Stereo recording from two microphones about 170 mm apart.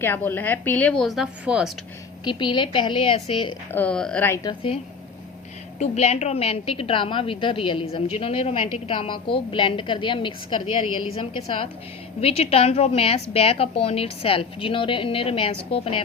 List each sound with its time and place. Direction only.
0.0 s a woman's voice: 10° left (ahead or behind); by 1.7 s 5° right (ahead or behind)
2.2 s a woman's voice: 30° left (ahead or behind)
3.7 s a woman's voice: 10° left (ahead or behind)
4.4 s a woman's voice: 30° left (ahead or behind)
5.8 s a woman's voice: 40° left (ahead or behind)